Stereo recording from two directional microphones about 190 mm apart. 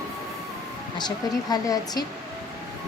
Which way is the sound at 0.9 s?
20° left (ahead or behind).